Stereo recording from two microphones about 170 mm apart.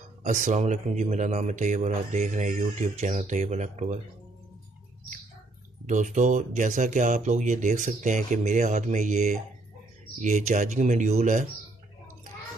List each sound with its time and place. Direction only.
0.2 s speech: 45° right (ahead or behind)
5.9 s speech: 45° right (ahead or behind)